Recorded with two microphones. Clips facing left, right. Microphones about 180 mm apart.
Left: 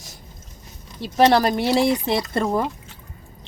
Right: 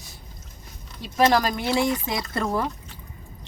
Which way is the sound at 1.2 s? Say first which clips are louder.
Left 4 dB; 35° left (ahead or behind).